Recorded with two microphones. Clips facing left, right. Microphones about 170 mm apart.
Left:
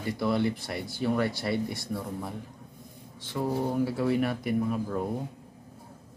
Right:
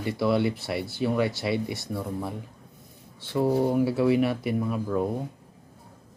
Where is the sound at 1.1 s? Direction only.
20° right (ahead or behind).